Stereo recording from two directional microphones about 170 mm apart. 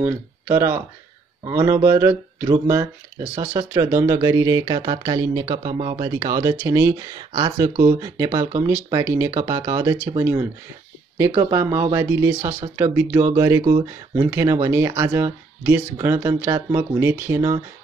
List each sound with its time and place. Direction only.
0.5 s speech: 15° right (ahead or behind)